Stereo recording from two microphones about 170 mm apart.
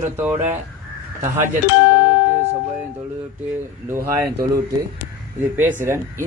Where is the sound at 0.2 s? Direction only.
10° right (ahead or behind).